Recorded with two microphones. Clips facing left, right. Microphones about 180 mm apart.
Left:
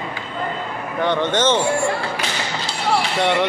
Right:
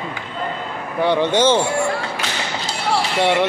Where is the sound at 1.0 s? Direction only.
10° right (ahead or behind).